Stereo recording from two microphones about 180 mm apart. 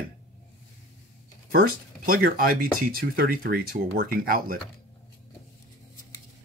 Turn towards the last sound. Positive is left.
turn(degrees=-50)  # may be behind; listen again after turning